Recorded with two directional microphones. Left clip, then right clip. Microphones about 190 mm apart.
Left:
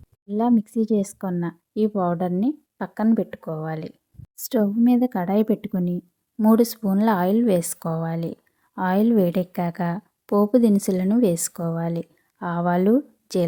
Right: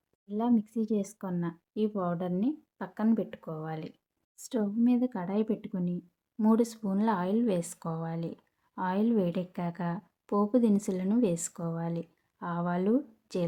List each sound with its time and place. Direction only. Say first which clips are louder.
0.3 s speech: left 8 dB; 40° left (ahead or behind)